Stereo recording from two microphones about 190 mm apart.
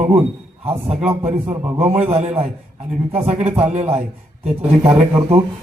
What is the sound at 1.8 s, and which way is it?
A man's voice, 35° right (ahead or behind).